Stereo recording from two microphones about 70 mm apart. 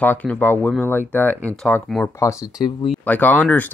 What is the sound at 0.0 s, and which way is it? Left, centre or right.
Speech, left.